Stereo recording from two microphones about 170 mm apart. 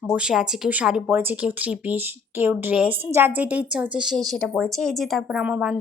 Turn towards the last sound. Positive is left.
turn(degrees=-5)  # may be behind; listen again after turning